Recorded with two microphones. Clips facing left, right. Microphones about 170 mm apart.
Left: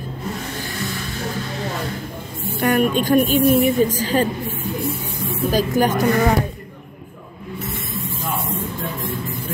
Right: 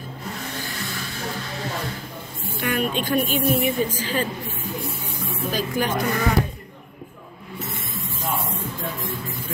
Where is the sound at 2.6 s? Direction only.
45° left (ahead or behind).